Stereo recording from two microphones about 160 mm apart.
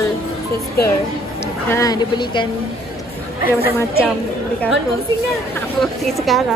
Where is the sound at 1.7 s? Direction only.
25° left (ahead or behind).